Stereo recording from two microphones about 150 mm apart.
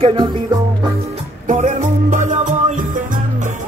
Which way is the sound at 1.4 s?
55° right (ahead or behind).